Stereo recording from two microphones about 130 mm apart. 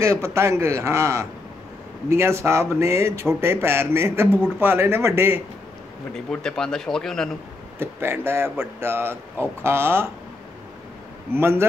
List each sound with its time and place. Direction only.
0.0 s speech: 20° right (ahead or behind)
6.1 s speech: 5° left (ahead or behind)
7.8 s speech: 20° right (ahead or behind)
11.3 s speech: 20° right (ahead or behind)